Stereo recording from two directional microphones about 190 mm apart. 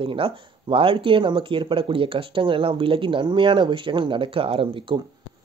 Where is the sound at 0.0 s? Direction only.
25° right (ahead or behind).